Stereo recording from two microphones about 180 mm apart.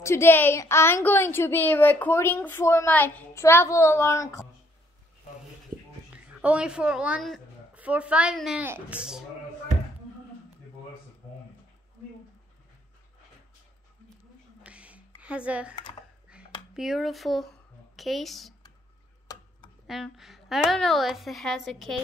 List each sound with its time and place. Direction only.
0.0 s a woman's voice: 15° left (ahead or behind)
6.1 s a woman's voice: 5° right (ahead or behind)
14.6 s a sound: 5° right (ahead or behind)
15.7 s speech: 25° left (ahead or behind)
16.7 s a woman's voice: centre (ahead or behind)
19.3 s a sound: 20° left (ahead or behind)
19.9 s a woman's voice: centre (ahead or behind)